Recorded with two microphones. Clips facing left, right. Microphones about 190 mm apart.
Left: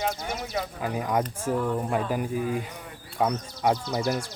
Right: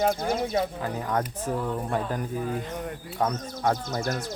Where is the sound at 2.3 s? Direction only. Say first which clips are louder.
Left 1 dB; 45° right (ahead or behind).